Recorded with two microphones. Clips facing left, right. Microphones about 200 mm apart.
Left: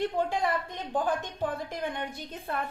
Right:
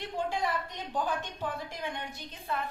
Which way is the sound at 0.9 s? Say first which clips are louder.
Left 4 dB; 50° left (ahead or behind).